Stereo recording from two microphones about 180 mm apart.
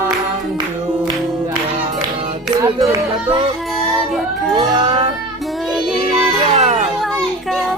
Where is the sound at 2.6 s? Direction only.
15° right (ahead or behind).